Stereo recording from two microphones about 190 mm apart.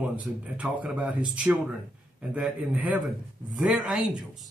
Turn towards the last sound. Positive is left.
turn(degrees=0)  # may be behind; listen again after turning